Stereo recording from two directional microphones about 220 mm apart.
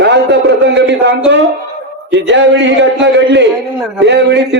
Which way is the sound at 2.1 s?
55° right (ahead or behind).